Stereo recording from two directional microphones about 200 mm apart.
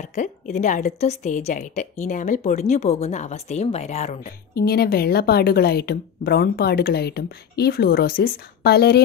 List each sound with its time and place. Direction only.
0.0 s a woman's voice: 35° left (ahead or behind)
4.6 s a woman's voice: 50° left (ahead or behind)